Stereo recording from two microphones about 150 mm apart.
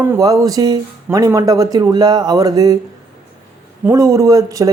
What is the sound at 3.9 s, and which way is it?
Speech, 20° right (ahead or behind).